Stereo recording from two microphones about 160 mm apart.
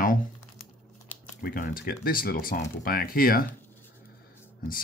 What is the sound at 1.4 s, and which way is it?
Speech, 60° left (ahead or behind).